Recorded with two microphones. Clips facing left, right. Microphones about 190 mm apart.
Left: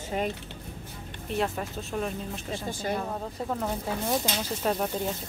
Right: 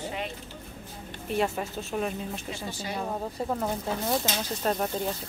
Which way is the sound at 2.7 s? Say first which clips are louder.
Left 6 dB; 50° left (ahead or behind).